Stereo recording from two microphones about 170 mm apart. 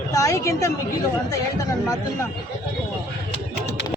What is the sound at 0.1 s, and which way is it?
A woman's voice, 20° left (ahead or behind).